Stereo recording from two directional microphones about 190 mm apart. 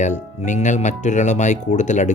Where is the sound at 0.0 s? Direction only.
40° left (ahead or behind).